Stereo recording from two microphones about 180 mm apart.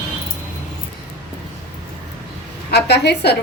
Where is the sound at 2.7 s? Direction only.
65° left (ahead or behind).